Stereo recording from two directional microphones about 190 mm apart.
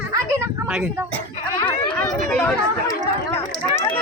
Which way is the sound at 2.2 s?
5° left (ahead or behind).